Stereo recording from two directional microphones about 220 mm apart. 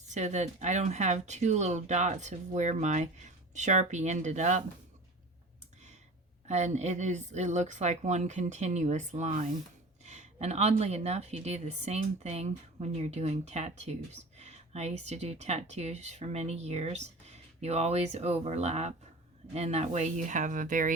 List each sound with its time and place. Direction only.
0.1 s speech: 30° right (ahead or behind)
6.5 s a woman's voice: 30° right (ahead or behind)